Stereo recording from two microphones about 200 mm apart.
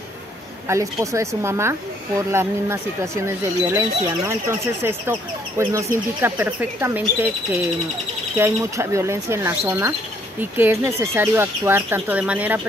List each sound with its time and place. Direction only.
0.7 s speech: 15° right (ahead or behind)
8.4 s speech: 15° right (ahead or behind)